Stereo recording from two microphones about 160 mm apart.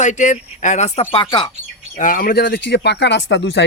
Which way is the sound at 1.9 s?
60° left (ahead or behind).